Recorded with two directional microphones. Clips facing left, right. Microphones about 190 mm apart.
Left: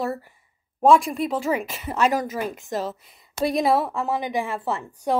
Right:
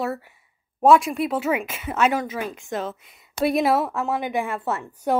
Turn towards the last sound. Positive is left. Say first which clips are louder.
# right 1 dB
turn(degrees=0)  # may be behind; listen again after turning